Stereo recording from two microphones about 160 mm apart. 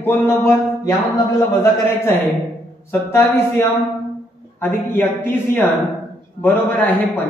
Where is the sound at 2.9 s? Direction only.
15° left (ahead or behind).